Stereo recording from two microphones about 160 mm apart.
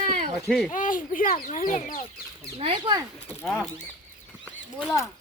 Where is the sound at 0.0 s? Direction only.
50° right (ahead or behind).